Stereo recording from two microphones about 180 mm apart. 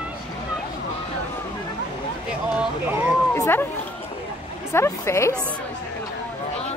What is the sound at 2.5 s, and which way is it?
Speech, 10° right (ahead or behind).